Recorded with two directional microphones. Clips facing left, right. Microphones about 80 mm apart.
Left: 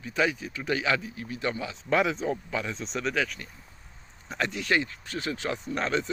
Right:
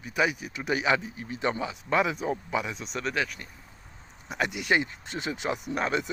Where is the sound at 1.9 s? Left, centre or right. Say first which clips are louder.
Left 1 dB; centre.